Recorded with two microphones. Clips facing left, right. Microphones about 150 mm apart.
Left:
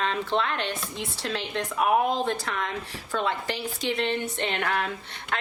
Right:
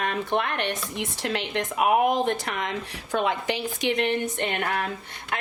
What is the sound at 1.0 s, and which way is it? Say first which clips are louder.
A woman's voice: right 3 dB; 20° right (ahead or behind).